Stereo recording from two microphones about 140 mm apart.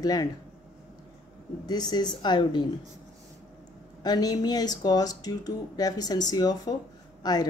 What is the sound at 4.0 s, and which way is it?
Speech, 30° left (ahead or behind).